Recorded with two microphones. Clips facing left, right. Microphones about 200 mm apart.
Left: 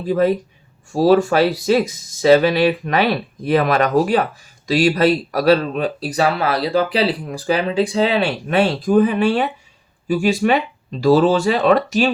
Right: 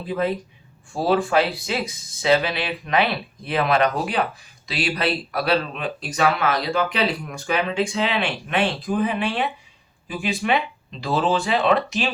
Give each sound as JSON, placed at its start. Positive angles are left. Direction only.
{"t": 0.1, "sound": "speech", "side_deg": 45}